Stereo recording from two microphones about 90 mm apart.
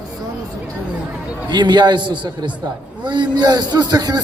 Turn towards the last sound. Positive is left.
turn(degrees=-50)  # may be behind; listen again after turning